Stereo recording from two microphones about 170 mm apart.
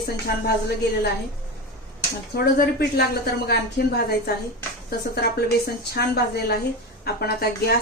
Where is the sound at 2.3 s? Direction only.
65° left (ahead or behind).